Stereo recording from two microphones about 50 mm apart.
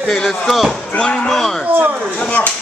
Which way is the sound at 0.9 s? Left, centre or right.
Left.